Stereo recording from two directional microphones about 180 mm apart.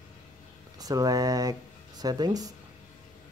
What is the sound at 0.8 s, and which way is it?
Speech, 20° right (ahead or behind).